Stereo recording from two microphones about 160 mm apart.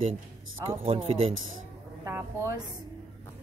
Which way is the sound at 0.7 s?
35° right (ahead or behind).